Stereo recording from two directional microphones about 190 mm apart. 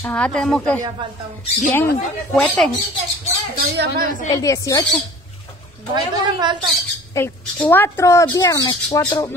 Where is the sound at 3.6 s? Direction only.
50° right (ahead or behind).